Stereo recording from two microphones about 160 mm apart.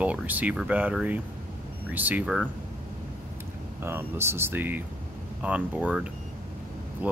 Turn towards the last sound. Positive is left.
turn(degrees=-10)  # may be behind; listen again after turning